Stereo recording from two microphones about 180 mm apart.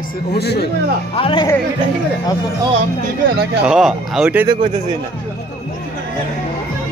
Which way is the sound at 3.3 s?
65° right (ahead or behind).